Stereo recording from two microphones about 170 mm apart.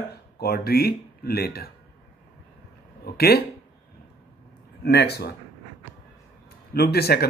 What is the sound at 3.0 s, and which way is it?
Speech, 65° left (ahead or behind).